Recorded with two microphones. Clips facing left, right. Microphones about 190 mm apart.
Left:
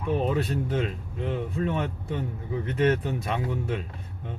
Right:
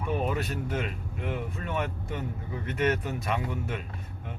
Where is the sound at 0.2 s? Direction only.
30° left (ahead or behind).